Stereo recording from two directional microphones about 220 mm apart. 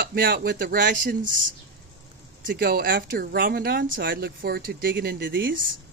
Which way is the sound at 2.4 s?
45° right (ahead or behind).